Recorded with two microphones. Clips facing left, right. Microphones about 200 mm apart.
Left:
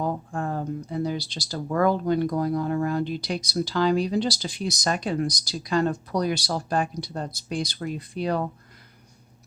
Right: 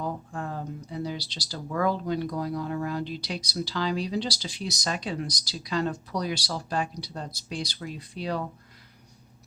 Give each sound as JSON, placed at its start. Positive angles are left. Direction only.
{"t": 0.0, "sound": "speech", "side_deg": 50}